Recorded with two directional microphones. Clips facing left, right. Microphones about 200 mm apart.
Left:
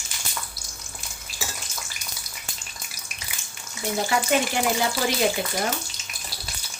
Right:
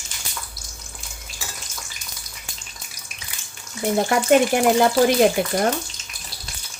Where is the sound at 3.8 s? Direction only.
55° right (ahead or behind).